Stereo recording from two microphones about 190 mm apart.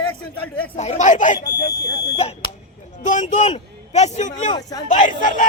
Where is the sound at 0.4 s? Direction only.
5° left (ahead or behind).